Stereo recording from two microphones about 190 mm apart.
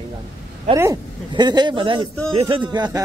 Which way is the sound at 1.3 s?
25° right (ahead or behind).